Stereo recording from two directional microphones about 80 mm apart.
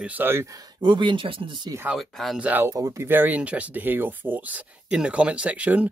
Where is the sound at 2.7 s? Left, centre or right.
Right.